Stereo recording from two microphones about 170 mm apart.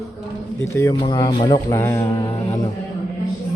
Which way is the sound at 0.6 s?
15° left (ahead or behind).